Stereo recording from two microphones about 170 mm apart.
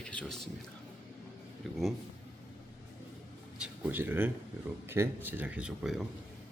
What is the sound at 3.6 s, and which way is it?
Speech, 10° right (ahead or behind).